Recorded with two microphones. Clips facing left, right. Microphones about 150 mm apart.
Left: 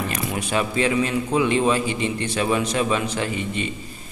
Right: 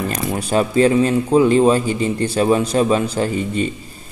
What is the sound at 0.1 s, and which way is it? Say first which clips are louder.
A man's voice: right 5 dB; 35° right (ahead or behind).